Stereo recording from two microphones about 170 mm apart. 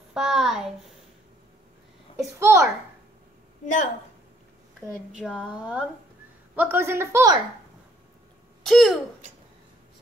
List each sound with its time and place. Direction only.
0.1 s speech: centre (ahead or behind)
2.3 s speech: 15° right (ahead or behind)
3.6 s a woman's voice: 45° left (ahead or behind)
5.1 s speech: 5° right (ahead or behind)
8.6 s speech: centre (ahead or behind)